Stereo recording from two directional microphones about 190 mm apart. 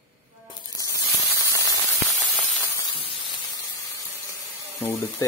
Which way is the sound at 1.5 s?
20° left (ahead or behind).